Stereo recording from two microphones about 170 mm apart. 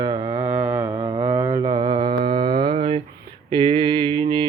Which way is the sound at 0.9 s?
30° right (ahead or behind).